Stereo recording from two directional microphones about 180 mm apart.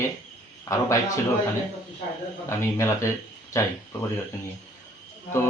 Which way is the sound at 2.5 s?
15° left (ahead or behind).